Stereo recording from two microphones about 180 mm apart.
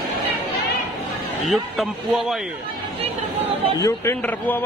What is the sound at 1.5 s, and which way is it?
Speech, centre (ahead or behind).